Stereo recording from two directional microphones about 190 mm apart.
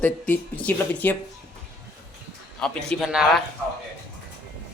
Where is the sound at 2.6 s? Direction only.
Centre (ahead or behind).